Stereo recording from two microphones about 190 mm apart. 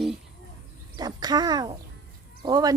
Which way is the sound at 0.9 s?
20° right (ahead or behind).